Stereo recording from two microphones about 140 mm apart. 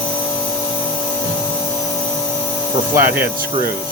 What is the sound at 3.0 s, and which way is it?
Speech, 15° right (ahead or behind).